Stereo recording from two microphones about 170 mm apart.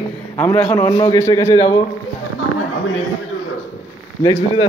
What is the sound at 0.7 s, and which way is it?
Speech, 20° left (ahead or behind).